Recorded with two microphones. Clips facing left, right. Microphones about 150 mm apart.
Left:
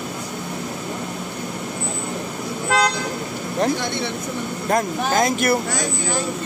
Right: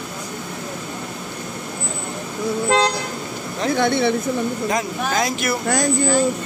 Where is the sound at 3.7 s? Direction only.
60° right (ahead or behind).